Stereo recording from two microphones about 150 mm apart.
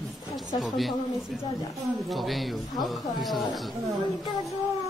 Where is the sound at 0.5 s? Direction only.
Centre (ahead or behind).